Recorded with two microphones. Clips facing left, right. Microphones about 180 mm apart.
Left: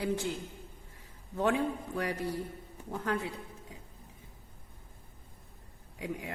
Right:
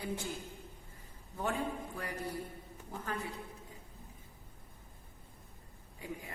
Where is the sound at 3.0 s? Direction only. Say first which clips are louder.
Left 7 dB; 75° left (ahead or behind).